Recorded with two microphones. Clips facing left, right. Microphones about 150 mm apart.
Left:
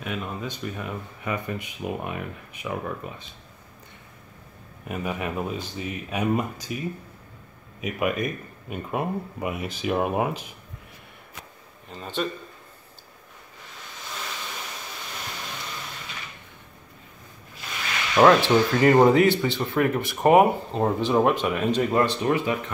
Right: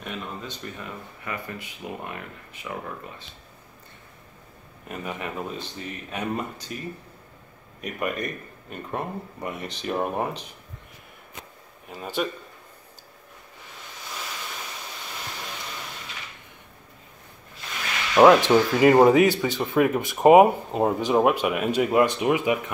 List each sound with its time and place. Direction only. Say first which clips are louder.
0.0 s speech: left 3 dB; 10° left (ahead or behind)
4.8 s speech: left 3 dB; 10° left (ahead or behind)
7.8 s speech: left 3 dB; 5° left (ahead or behind)
11.9 s speech: right 1 dB; 10° right (ahead or behind)
18.1 s speech: right 2 dB; 10° right (ahead or behind)